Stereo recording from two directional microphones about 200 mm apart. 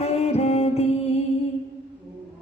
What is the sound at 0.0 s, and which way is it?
Music, 30° left (ahead or behind).